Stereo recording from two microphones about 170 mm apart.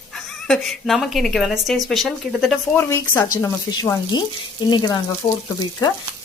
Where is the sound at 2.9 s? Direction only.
15° left (ahead or behind).